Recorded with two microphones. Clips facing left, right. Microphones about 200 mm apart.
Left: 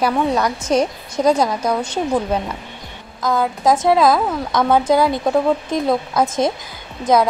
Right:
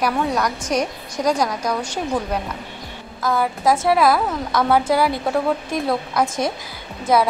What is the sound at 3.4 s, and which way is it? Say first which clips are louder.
A woman's voice: left 2 dB; 20° left (ahead or behind).